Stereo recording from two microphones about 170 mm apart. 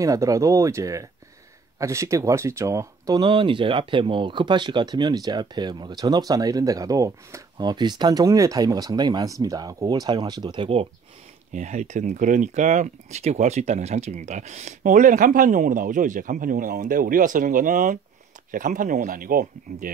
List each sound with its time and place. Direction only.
0.0 s speech: 20° right (ahead or behind)
11.5 s speech: 45° right (ahead or behind)